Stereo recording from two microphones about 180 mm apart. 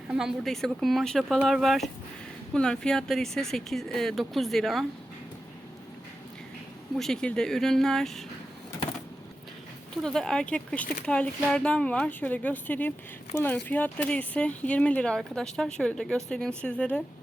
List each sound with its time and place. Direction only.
0.1 s speech: 5° right (ahead or behind)
7.0 s speech: 5° left (ahead or behind)
10.0 s speech: 5° left (ahead or behind)